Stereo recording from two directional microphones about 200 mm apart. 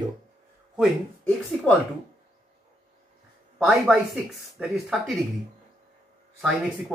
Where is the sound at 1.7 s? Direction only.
5° left (ahead or behind).